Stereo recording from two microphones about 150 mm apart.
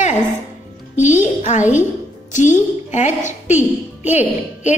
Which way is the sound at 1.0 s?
55° left (ahead or behind).